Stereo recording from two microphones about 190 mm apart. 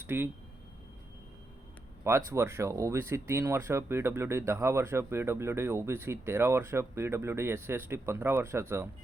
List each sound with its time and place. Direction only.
0.0 s speech: 10° right (ahead or behind)
2.0 s speech: 15° right (ahead or behind)